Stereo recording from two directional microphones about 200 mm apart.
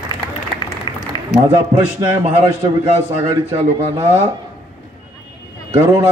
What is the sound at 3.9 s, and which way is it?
Speech, 25° right (ahead or behind).